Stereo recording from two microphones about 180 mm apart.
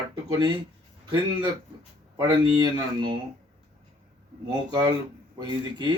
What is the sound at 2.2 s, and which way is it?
Speech, 25° right (ahead or behind).